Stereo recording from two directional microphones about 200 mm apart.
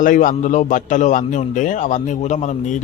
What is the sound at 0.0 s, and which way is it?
A man's voice, 40° left (ahead or behind).